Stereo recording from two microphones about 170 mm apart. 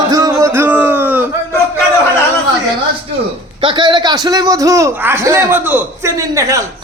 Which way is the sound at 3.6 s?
30° right (ahead or behind).